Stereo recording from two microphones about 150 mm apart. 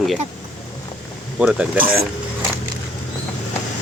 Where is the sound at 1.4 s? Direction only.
5° right (ahead or behind).